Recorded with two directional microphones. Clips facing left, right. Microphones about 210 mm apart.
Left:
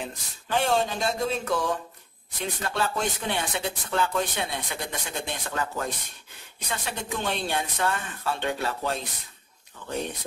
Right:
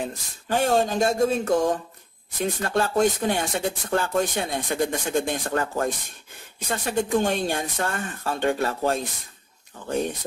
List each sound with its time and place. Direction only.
0.0 s speech: 45° right (ahead or behind)